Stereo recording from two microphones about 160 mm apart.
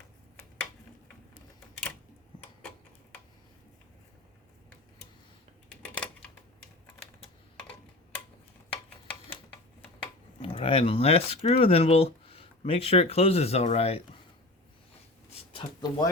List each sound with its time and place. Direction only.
5.6 s a sound: 5° left (ahead or behind)
10.4 s speech: 35° left (ahead or behind)
15.5 s speech: 25° left (ahead or behind)